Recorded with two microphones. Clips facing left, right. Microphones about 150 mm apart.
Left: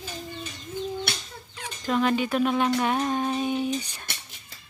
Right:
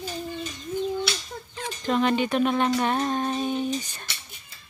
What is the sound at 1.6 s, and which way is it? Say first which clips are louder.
Speech: right 1 dB; 5° left (ahead or behind).